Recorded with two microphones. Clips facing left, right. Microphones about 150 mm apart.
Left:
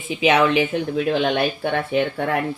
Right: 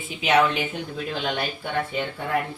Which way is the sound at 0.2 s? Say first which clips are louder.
Left 4 dB; 90° left.